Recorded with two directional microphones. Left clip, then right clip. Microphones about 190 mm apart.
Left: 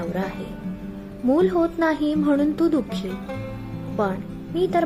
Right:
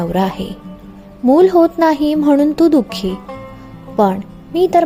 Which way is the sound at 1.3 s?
35° right (ahead or behind).